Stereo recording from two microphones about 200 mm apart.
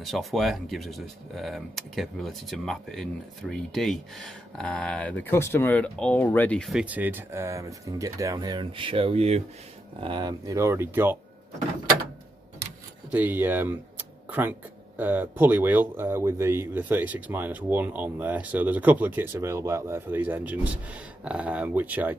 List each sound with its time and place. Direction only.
0.0 s speech: centre (ahead or behind)
13.1 s speech: 10° right (ahead or behind)